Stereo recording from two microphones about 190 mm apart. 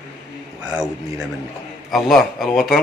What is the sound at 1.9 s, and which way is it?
Speech, centre (ahead or behind).